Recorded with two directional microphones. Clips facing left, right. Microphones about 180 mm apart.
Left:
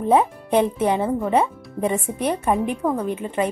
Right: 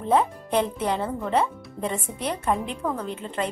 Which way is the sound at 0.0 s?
15° left (ahead or behind).